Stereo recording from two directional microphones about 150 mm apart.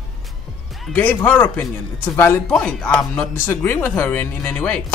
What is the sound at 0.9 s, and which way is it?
Speech, 10° left (ahead or behind).